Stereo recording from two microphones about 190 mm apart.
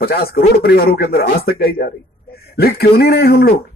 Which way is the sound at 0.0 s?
55° left (ahead or behind).